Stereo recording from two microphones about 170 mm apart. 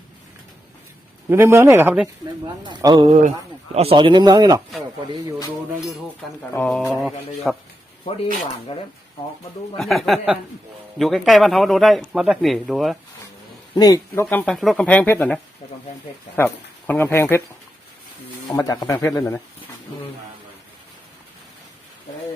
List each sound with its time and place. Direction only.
1.3 s speech: 15° right (ahead or behind)
2.6 s speech: 25° right (ahead or behind)
6.5 s speech: 10° left (ahead or behind)
8.7 s speech: 35° left (ahead or behind)
9.7 s speech: centre (ahead or behind)
13.7 s speech: 20° left (ahead or behind)
18.5 s speech: 20° left (ahead or behind)